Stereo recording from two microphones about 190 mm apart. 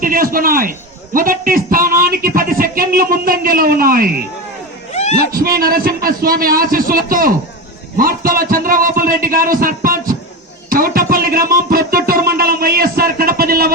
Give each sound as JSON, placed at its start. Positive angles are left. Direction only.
{"t": 0.0, "sound": "a man's voice", "side_deg": -50}
{"t": 4.9, "sound": "a sound", "side_deg": 35}
{"t": 5.3, "sound": "a man's voice", "side_deg": -50}